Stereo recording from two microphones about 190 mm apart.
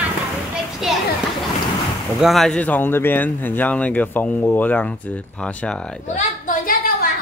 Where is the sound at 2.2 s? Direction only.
Centre (ahead or behind).